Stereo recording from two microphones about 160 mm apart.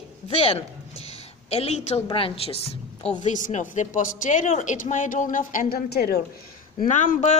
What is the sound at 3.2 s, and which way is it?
Speech, 50° left (ahead or behind).